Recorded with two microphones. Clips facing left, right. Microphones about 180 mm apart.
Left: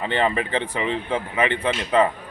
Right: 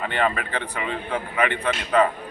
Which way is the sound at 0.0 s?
25° left (ahead or behind).